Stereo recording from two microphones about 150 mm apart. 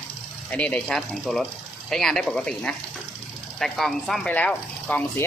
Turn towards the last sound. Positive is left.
turn(degrees=10)  # may be behind; listen again after turning